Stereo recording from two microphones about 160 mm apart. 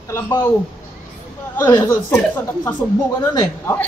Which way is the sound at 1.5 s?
20° left (ahead or behind).